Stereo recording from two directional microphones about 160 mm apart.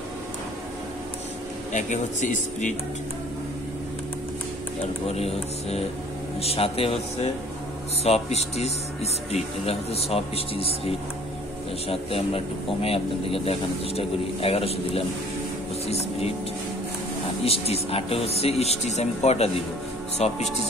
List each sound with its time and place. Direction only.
1.7 s speech: 50° left (ahead or behind)
5.0 s speech: 40° left (ahead or behind)
17.5 s speech: 40° left (ahead or behind)